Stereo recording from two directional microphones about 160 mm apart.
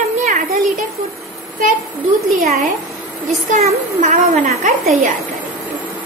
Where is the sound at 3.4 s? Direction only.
50° right (ahead or behind).